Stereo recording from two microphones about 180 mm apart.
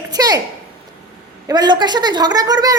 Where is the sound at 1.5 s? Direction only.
25° right (ahead or behind).